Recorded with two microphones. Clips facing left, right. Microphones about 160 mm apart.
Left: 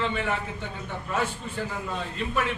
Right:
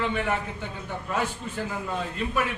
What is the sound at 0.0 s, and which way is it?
Speech, 5° right (ahead or behind).